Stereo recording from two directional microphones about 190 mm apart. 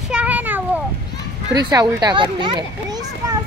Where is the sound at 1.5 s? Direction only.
20° right (ahead or behind).